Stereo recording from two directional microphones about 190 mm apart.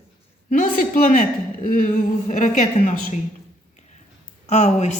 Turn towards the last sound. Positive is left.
turn(degrees=35)  # may be behind; listen again after turning